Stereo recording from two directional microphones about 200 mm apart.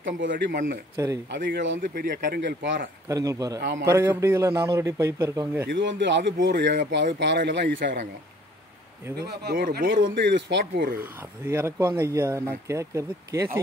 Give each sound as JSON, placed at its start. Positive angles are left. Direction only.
{"t": 0.4, "sound": "speech", "side_deg": -50}
{"t": 0.9, "sound": "speech", "side_deg": -15}
{"t": 1.3, "sound": "a man's voice", "side_deg": -60}
{"t": 1.8, "sound": "speech", "side_deg": -50}
{"t": 3.1, "sound": "speech", "side_deg": -15}
{"t": 3.5, "sound": "a man's voice", "side_deg": -60}
{"t": 3.9, "sound": "speech", "side_deg": -10}
{"t": 5.7, "sound": "a man's voice", "side_deg": -65}
{"t": 9.4, "sound": "speech", "side_deg": -50}
{"t": 10.0, "sound": "a man's voice", "side_deg": -60}
{"t": 11.0, "sound": "speech", "side_deg": -10}